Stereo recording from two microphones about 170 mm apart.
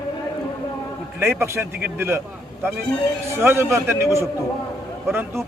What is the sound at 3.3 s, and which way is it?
A man's voice, 15° right (ahead or behind).